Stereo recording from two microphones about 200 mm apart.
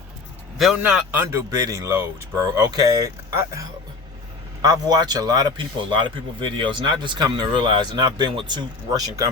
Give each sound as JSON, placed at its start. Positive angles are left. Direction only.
{"t": 0.6, "sound": "a man's voice", "side_deg": -5}